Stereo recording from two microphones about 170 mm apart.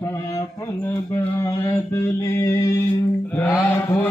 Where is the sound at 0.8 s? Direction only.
15° left (ahead or behind).